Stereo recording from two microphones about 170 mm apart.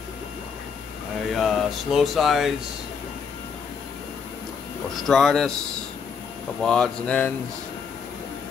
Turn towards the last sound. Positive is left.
turn(degrees=5)  # may be behind; listen again after turning